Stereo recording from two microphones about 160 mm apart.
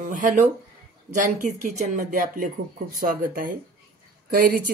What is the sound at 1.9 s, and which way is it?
Speech, 60° right (ahead or behind).